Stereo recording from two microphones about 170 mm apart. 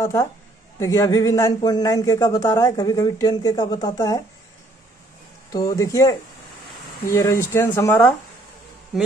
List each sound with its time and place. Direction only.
0.0 s speech: 15° left (ahead or behind)
5.5 s speech: 20° left (ahead or behind)